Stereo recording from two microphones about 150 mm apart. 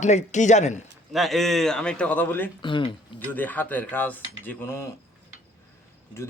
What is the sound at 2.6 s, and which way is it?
Speech, 35° left (ahead or behind).